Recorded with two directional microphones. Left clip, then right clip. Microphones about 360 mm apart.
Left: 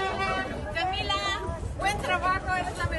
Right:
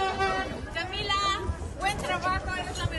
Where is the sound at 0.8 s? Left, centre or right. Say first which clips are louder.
Even; centre.